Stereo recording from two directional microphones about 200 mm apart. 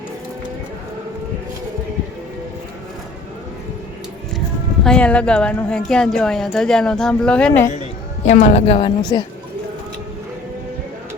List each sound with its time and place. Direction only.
4.4 s speech: 5° left (ahead or behind)
8.3 s a woman's voice: 35° left (ahead or behind)